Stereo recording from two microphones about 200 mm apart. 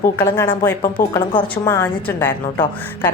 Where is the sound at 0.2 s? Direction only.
10° left (ahead or behind).